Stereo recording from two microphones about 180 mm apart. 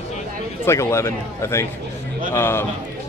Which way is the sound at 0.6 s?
15° left (ahead or behind).